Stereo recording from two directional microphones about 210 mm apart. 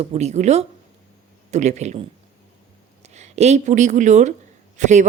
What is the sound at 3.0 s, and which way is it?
A woman's voice, 30° right (ahead or behind).